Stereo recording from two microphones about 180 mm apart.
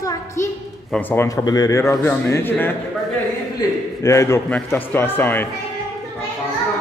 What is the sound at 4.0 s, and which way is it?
A man's voice, 15° left (ahead or behind).